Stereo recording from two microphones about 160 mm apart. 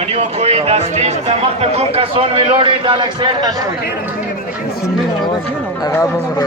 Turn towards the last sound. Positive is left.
turn(degrees=20)  # may be behind; listen again after turning